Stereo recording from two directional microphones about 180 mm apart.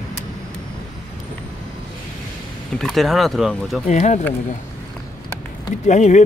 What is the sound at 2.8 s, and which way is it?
Speech, centre (ahead or behind).